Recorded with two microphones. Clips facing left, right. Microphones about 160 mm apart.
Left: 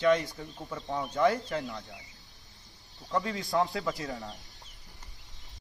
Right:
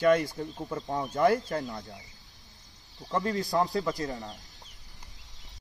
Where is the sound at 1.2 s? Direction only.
45° right (ahead or behind).